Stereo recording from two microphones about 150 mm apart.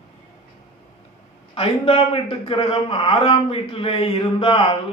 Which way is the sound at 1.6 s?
40° left (ahead or behind).